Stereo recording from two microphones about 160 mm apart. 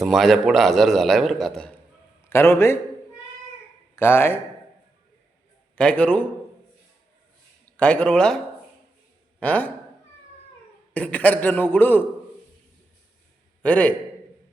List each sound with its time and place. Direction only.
0.0 s a man's voice: centre (ahead or behind)
2.3 s a man's voice: 15° left (ahead or behind)
3.9 s speech: 15° left (ahead or behind)
5.7 s a man's voice: 5° left (ahead or behind)
7.6 s speech: 10° left (ahead or behind)
9.4 s a man's voice: 10° left (ahead or behind)
10.9 s a man's voice: 10° left (ahead or behind)
13.6 s a man's voice: 10° left (ahead or behind)